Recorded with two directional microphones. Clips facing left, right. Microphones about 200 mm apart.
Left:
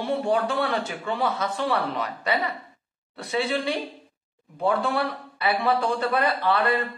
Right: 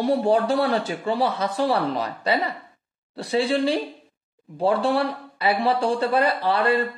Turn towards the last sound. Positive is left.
turn(degrees=-35)  # may be behind; listen again after turning